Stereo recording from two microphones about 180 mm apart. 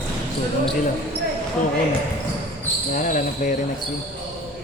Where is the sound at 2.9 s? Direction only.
45° left (ahead or behind).